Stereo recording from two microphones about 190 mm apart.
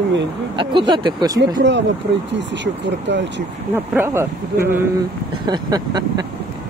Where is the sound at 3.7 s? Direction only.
10° right (ahead or behind).